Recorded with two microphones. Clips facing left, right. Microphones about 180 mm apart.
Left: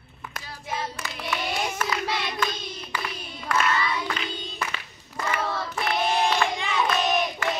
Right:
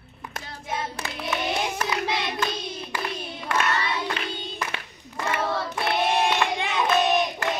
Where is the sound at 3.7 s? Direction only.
70° right (ahead or behind).